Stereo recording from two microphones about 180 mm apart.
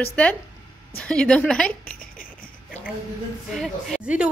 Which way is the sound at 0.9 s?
5° left (ahead or behind).